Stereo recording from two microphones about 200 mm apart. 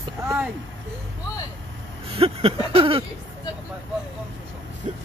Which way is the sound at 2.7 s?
30° right (ahead or behind).